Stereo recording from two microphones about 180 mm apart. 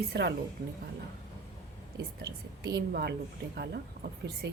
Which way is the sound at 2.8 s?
65° right (ahead or behind).